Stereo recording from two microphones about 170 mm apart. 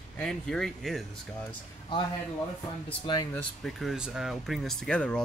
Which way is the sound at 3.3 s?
Centre (ahead or behind).